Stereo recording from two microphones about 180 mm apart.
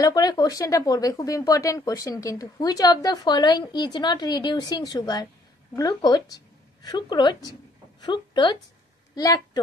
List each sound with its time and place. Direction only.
0.0 s a woman's voice: 20° left (ahead or behind)